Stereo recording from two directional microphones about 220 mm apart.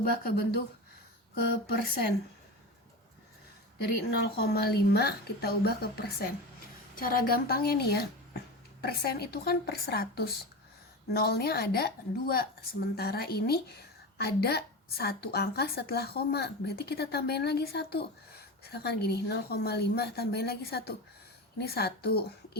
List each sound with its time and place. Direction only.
0.2 s a woman's voice: 45° left (ahead or behind)
3.8 s a woman's voice: 45° left (ahead or behind)